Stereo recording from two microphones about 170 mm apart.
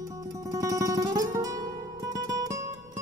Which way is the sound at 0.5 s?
20° right (ahead or behind).